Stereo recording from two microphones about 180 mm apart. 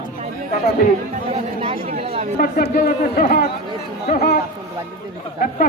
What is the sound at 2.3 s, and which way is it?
Speech, 55° left (ahead or behind).